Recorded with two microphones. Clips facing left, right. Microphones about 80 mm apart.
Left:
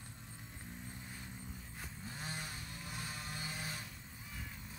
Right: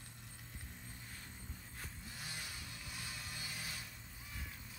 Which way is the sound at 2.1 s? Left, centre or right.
Left.